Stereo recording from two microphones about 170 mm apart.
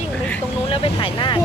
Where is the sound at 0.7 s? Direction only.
30° left (ahead or behind).